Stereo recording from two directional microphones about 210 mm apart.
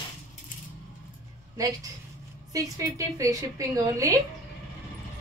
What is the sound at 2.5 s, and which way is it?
A woman's voice, 15° right (ahead or behind).